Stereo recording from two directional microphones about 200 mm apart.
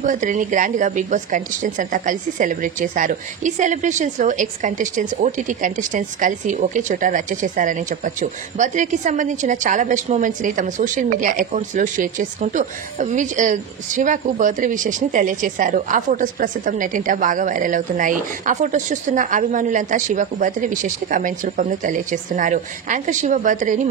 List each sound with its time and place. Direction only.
0.0 s a woman's voice: 40° right (ahead or behind)